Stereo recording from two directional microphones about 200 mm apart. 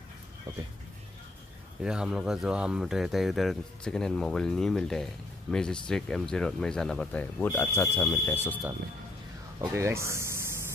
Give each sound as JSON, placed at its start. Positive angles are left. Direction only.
{"t": 0.5, "sound": "speech", "side_deg": -15}
{"t": 1.8, "sound": "speech", "side_deg": -5}
{"t": 9.6, "sound": "speech", "side_deg": -15}